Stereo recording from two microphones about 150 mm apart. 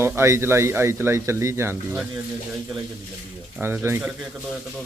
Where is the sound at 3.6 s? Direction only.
15° right (ahead or behind).